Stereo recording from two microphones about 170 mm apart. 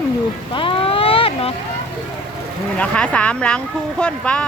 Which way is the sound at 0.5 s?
30° left (ahead or behind).